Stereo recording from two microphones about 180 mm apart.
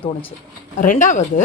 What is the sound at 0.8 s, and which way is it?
Speech, 45° left (ahead or behind).